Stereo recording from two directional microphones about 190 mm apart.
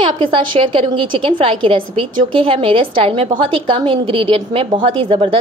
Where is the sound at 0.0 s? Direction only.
25° right (ahead or behind).